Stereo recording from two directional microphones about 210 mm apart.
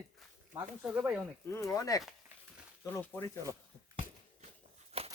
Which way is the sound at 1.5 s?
15° left (ahead or behind).